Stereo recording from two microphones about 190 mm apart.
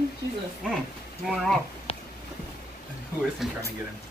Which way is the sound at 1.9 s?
30° left (ahead or behind).